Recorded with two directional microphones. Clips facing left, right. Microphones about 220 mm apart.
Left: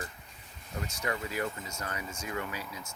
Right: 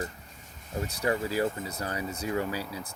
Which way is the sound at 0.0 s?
35° right (ahead or behind).